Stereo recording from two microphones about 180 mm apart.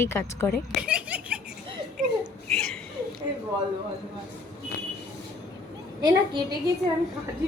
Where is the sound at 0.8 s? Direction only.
5° right (ahead or behind).